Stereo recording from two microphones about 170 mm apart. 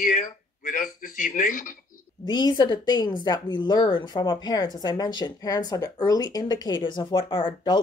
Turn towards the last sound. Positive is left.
turn(degrees=30)  # may be behind; listen again after turning